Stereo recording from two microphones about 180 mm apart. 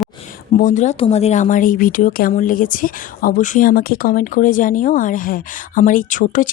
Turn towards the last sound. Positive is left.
turn(degrees=45)  # may be behind; listen again after turning